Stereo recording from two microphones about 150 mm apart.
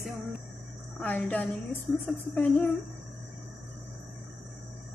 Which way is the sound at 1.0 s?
10° left (ahead or behind).